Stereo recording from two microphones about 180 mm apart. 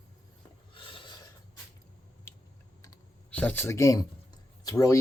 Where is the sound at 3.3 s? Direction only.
10° left (ahead or behind).